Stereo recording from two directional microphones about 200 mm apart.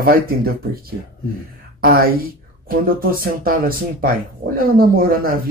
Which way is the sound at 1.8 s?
50° right (ahead or behind).